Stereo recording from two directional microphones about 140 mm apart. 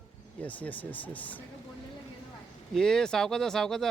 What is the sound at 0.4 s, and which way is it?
Speech, 10° left (ahead or behind).